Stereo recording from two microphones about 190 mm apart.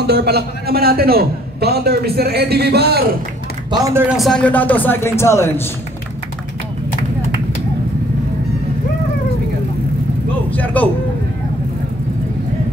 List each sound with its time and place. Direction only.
0.0 s a man's voice: 55° right (ahead or behind)
3.7 s speech: 15° right (ahead or behind)
4.1 s speech: centre (ahead or behind)
10.5 s a sound: 10° left (ahead or behind)